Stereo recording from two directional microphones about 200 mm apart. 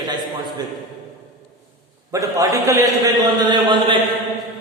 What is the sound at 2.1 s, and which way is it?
A man's voice, 15° right (ahead or behind).